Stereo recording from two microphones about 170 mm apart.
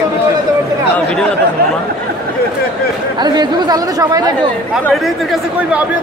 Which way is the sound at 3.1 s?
25° right (ahead or behind).